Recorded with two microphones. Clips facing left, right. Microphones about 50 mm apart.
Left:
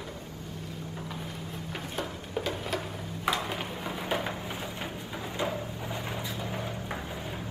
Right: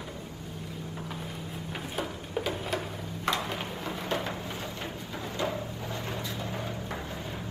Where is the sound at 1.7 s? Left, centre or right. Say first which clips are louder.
Right 1 dB; centre.